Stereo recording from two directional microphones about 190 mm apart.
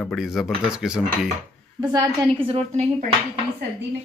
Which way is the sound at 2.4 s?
35° right (ahead or behind).